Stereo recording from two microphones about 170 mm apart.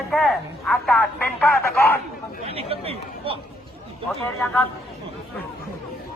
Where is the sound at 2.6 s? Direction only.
35° right (ahead or behind).